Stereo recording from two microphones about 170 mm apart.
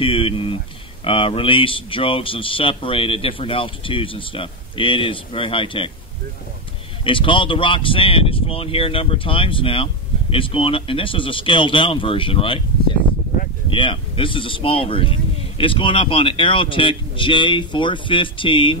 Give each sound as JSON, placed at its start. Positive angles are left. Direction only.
{"t": 0.0, "sound": "speech", "side_deg": 30}
{"t": 7.1, "sound": "speech", "side_deg": 30}
{"t": 13.7, "sound": "speech", "side_deg": 30}